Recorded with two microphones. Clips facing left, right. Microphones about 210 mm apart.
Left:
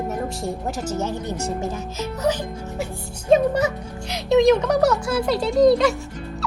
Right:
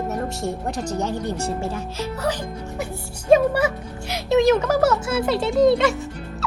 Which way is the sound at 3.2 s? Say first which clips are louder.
Right 1 dB; 10° right (ahead or behind).